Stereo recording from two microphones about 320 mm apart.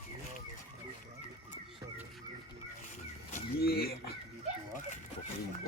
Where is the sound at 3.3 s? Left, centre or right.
Left.